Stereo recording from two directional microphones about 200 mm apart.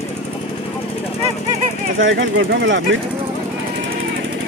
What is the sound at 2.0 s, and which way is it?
Speech, 70° right (ahead or behind).